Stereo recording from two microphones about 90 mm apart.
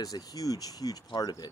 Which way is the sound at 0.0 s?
45° left (ahead or behind).